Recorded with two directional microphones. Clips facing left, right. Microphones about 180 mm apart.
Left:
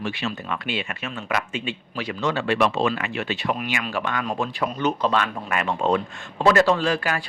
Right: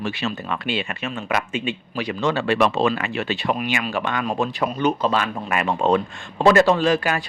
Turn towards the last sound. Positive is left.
turn(degrees=-20)  # may be behind; listen again after turning